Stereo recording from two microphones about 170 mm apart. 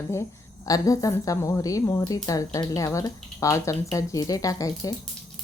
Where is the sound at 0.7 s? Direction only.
20° left (ahead or behind).